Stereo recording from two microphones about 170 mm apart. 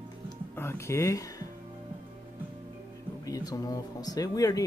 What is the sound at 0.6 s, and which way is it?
Speech, 15° left (ahead or behind).